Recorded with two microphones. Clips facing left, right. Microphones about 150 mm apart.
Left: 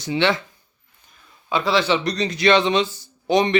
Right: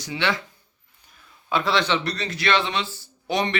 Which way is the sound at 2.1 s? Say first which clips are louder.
Left 6 dB; 15° left (ahead or behind).